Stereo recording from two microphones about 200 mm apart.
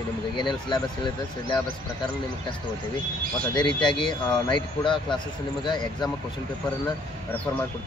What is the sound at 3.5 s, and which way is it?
Speech, 20° left (ahead or behind).